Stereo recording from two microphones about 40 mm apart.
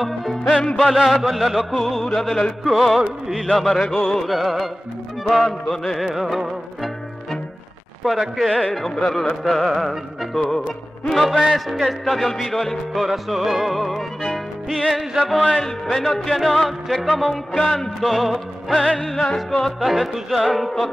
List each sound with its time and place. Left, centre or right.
0.0 s music: centre
0.4 s music: left
0.7 s music: centre
8.0 s music: centre